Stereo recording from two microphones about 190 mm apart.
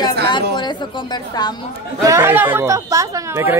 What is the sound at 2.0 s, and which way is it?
Speech, 15° right (ahead or behind).